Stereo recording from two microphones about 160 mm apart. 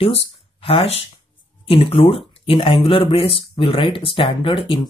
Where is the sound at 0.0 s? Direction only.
35° left (ahead or behind).